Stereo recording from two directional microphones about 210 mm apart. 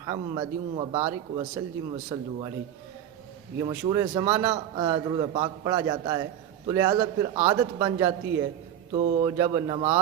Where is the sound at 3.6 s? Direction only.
15° right (ahead or behind).